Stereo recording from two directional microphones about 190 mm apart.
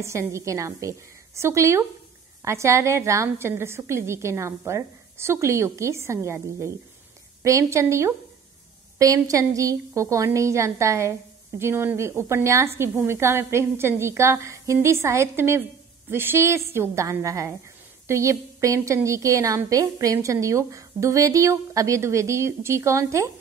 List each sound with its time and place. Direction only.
0.0 s a woman's voice: 15° right (ahead or behind)